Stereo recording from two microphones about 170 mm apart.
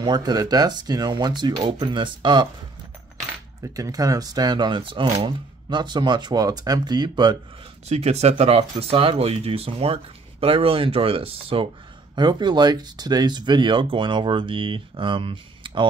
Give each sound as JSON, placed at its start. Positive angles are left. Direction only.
{"t": 0.0, "sound": "speech", "side_deg": -25}
{"t": 3.6, "sound": "speech", "side_deg": -20}
{"t": 7.8, "sound": "speech", "side_deg": -40}